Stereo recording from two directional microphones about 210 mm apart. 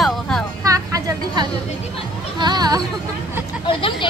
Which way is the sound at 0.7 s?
15° right (ahead or behind).